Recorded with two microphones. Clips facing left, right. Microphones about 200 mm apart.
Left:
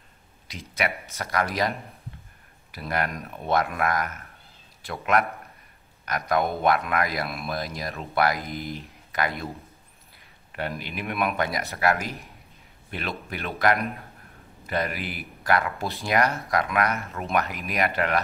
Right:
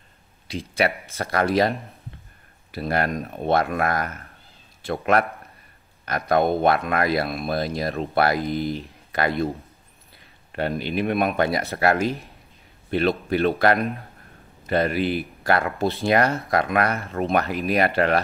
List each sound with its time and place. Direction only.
0.5 s speech: 30° right (ahead or behind)
2.7 s speech: 30° right (ahead or behind)
10.5 s speech: 30° right (ahead or behind)